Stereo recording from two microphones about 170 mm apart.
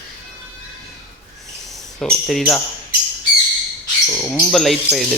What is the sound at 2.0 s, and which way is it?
Speech, 5° left (ahead or behind).